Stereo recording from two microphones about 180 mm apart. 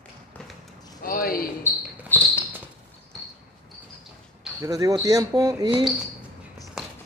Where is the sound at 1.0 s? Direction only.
55° left (ahead or behind).